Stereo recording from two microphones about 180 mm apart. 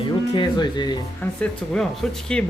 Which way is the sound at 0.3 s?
25° left (ahead or behind).